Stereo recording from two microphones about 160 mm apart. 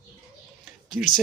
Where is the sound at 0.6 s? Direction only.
Centre (ahead or behind).